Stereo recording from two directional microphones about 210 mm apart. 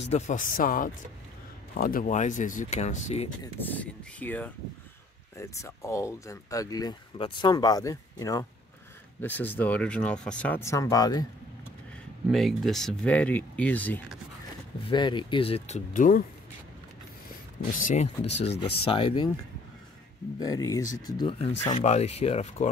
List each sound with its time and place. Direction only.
0.1 s speech: 35° left (ahead or behind)
3.5 s speech: 10° left (ahead or behind)
12.3 s speech: centre (ahead or behind)
14.9 s speech: 20° left (ahead or behind); by 16.3 s 40° left (ahead or behind)
17.6 s speech: 40° left (ahead or behind); by 19.3 s 20° left (ahead or behind)
20.3 s speech: 15° left (ahead or behind)